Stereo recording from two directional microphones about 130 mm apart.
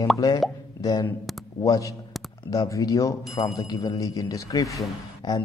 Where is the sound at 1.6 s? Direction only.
25° left (ahead or behind).